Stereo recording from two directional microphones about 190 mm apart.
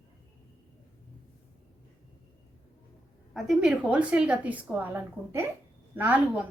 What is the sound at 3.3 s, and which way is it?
A woman's voice, centre (ahead or behind).